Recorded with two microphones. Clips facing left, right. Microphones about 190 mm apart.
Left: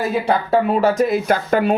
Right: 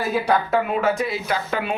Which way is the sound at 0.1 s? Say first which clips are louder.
Even; 30° left (ahead or behind).